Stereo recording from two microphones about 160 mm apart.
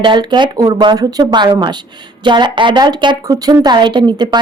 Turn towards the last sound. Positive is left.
turn(degrees=-30)  # may be behind; listen again after turning